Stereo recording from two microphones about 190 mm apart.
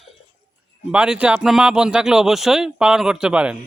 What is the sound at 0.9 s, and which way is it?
A man's voice, 5° right (ahead or behind).